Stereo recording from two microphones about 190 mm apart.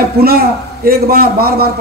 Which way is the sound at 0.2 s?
55° right (ahead or behind).